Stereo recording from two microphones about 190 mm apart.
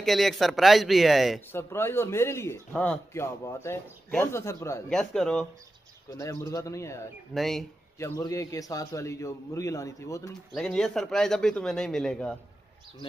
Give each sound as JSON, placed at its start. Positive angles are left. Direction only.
{"t": 0.0, "sound": "a man's voice", "side_deg": 0}
{"t": 1.5, "sound": "a man's voice", "side_deg": 10}
{"t": 4.9, "sound": "a man's voice", "side_deg": 5}
{"t": 6.0, "sound": "a man's voice", "side_deg": 15}
{"t": 7.3, "sound": "a man's voice", "side_deg": 0}
{"t": 8.0, "sound": "a man's voice", "side_deg": 15}
{"t": 10.5, "sound": "a man's voice", "side_deg": 5}